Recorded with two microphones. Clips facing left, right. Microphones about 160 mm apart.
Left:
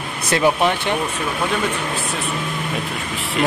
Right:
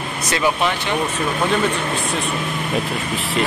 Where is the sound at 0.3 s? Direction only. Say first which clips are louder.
Left 3 dB; 50° left (ahead or behind).